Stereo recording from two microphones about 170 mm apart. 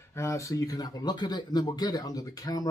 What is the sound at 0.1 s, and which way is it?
Speech, 15° left (ahead or behind).